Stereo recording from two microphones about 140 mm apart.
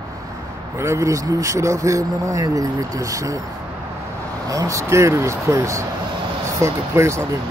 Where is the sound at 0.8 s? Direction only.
20° right (ahead or behind).